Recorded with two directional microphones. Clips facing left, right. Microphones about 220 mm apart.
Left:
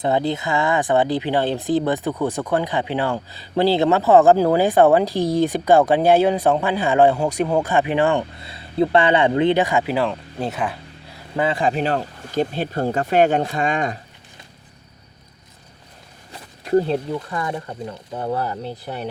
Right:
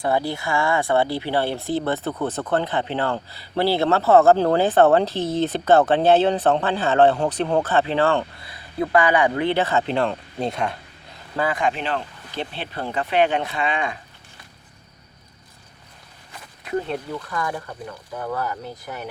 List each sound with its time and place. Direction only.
0.0 s speech: 20° left (ahead or behind); by 10.8 s 5° left (ahead or behind)
11.3 s speech: 30° left (ahead or behind)
16.3 s a sound: 35° left (ahead or behind)
17.1 s speech: 25° left (ahead or behind)